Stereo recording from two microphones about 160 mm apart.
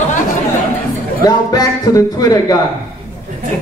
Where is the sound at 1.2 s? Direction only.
25° left (ahead or behind).